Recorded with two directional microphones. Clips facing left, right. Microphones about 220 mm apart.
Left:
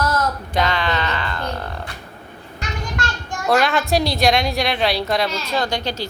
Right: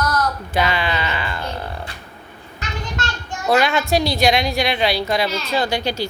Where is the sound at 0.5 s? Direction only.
5° right (ahead or behind).